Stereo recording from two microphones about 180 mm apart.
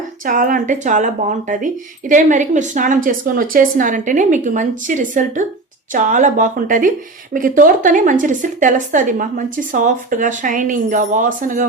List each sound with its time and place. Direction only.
0.3 s speech: 50° right (ahead or behind)